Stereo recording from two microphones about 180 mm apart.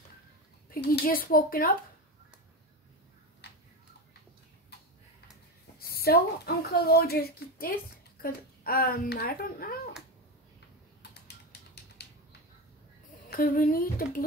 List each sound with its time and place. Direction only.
0.7 s speech: 60° left (ahead or behind)
5.8 s speech: 55° left (ahead or behind)
11.0 s mechanisms: 65° left (ahead or behind)
13.3 s speech: 55° left (ahead or behind)